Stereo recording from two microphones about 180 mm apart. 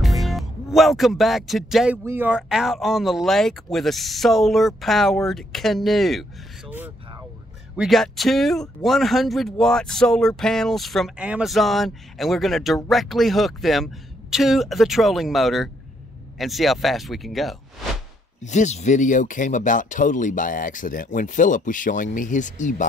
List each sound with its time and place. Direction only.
0.0 s speech: centre (ahead or behind)
6.7 s vehicle: 10° right (ahead or behind)
7.7 s speech: centre (ahead or behind)
18.4 s speech: 40° left (ahead or behind)